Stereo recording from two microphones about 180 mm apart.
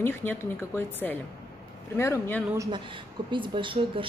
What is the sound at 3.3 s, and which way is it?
Speech, 25° right (ahead or behind).